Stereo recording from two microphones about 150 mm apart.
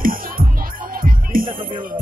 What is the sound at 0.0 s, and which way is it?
Music, 70° right (ahead or behind).